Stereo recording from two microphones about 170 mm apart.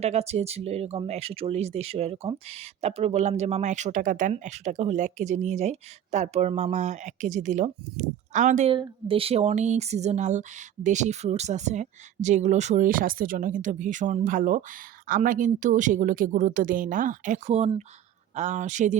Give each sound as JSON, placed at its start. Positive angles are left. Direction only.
{"t": 0.0, "sound": "speech", "side_deg": -40}
{"t": 8.7, "sound": "speech", "side_deg": -30}